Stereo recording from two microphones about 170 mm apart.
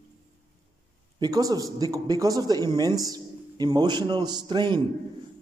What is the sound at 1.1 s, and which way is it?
A man's voice, 25° right (ahead or behind).